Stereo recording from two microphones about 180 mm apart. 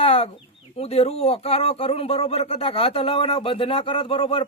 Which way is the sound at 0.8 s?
35° left (ahead or behind).